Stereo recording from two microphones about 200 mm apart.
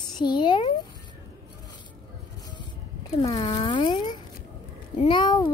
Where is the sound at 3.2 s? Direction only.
20° left (ahead or behind).